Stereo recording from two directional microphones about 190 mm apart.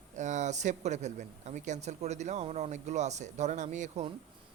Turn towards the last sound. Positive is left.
turn(degrees=-35)  # may be behind; listen again after turning